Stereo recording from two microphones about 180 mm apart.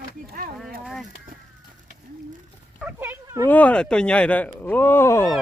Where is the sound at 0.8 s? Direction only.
Centre (ahead or behind).